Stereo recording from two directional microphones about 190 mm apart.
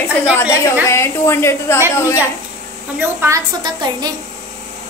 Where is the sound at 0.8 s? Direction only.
15° left (ahead or behind).